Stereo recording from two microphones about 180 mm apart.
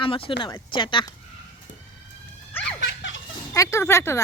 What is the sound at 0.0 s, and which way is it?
Speech, 30° left (ahead or behind).